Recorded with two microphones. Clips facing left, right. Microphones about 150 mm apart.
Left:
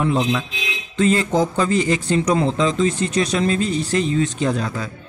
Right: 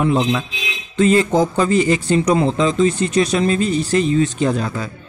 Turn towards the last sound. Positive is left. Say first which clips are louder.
# right 2 dB
turn(degrees=-5)  # may be behind; listen again after turning